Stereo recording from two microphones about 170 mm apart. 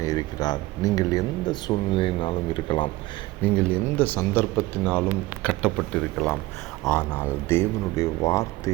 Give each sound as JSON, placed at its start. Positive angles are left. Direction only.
{"t": 0.0, "sound": "speech", "side_deg": 20}
{"t": 3.4, "sound": "speech", "side_deg": 5}